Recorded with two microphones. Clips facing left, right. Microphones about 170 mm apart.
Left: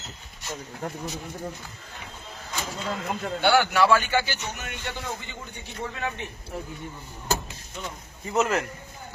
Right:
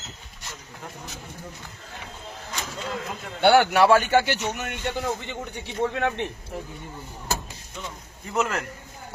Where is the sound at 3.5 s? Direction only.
55° right (ahead or behind).